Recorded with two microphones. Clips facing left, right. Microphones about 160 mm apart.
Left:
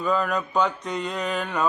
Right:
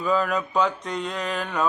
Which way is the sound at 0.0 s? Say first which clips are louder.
Right 1 dB; centre (ahead or behind).